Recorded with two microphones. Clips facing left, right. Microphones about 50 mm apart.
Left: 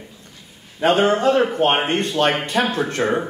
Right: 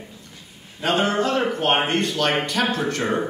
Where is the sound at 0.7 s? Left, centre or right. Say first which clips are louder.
Left 4 dB; left.